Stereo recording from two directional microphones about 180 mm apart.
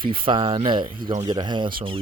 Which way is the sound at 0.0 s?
30° right (ahead or behind).